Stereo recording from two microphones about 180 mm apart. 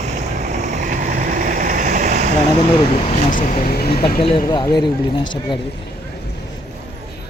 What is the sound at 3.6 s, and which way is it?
Speech, 60° left (ahead or behind).